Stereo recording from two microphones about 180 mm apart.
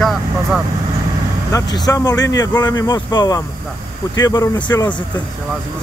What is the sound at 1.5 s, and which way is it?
Speech, 20° left (ahead or behind).